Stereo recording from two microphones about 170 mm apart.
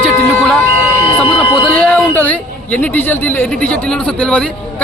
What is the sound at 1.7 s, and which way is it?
Speech, 10° left (ahead or behind).